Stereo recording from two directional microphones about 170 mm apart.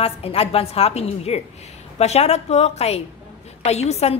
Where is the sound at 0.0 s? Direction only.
35° left (ahead or behind).